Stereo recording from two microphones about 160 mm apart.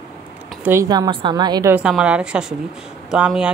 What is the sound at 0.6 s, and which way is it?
A woman's voice, 15° right (ahead or behind).